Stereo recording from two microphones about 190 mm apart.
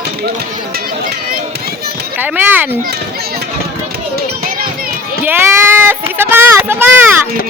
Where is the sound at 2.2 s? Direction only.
10° right (ahead or behind).